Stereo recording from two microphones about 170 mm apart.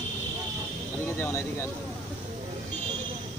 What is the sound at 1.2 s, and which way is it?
Speech, 15° left (ahead or behind).